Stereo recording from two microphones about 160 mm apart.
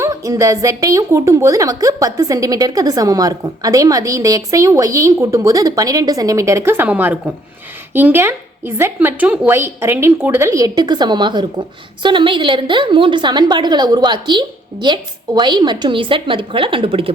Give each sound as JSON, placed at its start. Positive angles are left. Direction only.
{"t": 0.0, "sound": "a woman's voice", "side_deg": -20}